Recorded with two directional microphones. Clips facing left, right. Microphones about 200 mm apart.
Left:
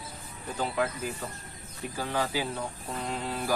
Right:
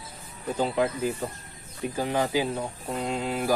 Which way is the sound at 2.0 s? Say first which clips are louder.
Right 5 dB; 20° right (ahead or behind).